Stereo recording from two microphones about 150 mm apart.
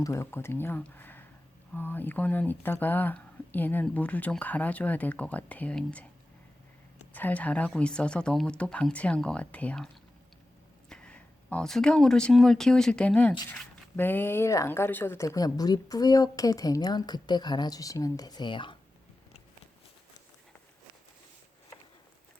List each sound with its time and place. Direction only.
0.0 s speech: 20° left (ahead or behind)
7.1 s speech: 10° left (ahead or behind); by 18.8 s 30° left (ahead or behind)